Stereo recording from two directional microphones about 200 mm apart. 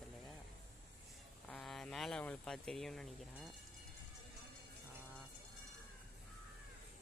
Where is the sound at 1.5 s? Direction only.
Centre (ahead or behind).